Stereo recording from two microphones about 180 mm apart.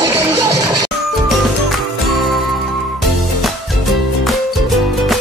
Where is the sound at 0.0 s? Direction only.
10° right (ahead or behind).